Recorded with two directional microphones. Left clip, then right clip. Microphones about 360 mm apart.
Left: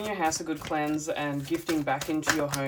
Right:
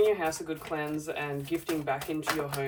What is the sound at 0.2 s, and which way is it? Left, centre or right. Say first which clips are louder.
Speech: left 3 dB; centre.